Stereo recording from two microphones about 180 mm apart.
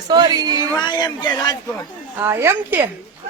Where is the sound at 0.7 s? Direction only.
25° left (ahead or behind).